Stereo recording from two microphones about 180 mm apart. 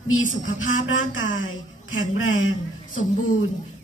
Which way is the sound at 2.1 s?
90° left.